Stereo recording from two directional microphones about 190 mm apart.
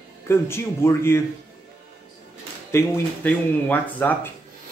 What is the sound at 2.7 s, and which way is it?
Speech, 10° left (ahead or behind).